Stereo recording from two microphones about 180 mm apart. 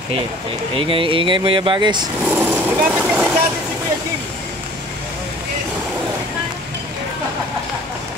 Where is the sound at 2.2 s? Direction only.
10° right (ahead or behind).